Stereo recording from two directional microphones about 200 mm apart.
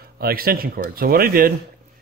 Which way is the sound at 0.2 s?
50° right (ahead or behind).